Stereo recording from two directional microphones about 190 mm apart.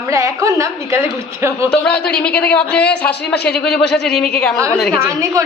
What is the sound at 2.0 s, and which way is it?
A woman's voice, 5° left (ahead or behind).